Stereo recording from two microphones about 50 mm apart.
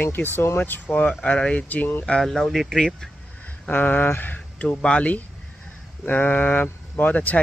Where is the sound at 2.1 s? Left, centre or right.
Centre.